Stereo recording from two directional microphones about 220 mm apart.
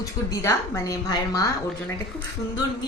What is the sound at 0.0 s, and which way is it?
A woman's voice, 15° left (ahead or behind).